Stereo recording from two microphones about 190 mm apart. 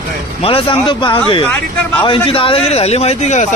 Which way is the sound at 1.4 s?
5° left (ahead or behind).